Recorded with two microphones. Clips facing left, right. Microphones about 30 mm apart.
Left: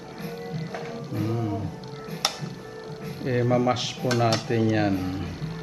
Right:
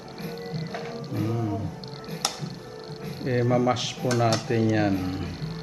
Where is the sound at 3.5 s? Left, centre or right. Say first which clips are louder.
Even; centre.